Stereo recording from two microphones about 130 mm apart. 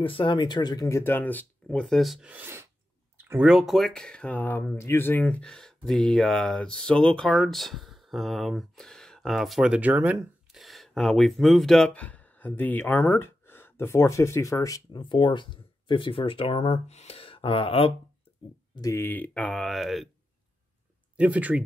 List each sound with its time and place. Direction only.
0.0 s speech: 40° left (ahead or behind); by 2.7 s 15° right (ahead or behind)
3.4 s speech: centre (ahead or behind)
10.5 s speech: centre (ahead or behind); by 17.9 s 45° left (ahead or behind)
18.8 s speech: 20° left (ahead or behind); by 20.1 s centre (ahead or behind)
21.2 s speech: 10° right (ahead or behind)